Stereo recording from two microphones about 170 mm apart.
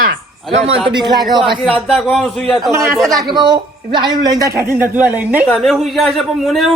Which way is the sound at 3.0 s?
Centre (ahead or behind).